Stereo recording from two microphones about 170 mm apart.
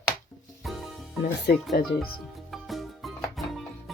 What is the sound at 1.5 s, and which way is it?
Speech, 65° left (ahead or behind).